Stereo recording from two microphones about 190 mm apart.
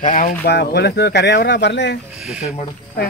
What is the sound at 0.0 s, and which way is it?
Speech, 45° left (ahead or behind).